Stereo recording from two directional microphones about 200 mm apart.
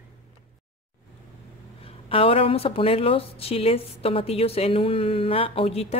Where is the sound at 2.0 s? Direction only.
30° left (ahead or behind).